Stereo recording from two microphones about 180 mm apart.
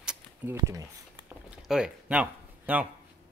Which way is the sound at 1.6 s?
5° right (ahead or behind).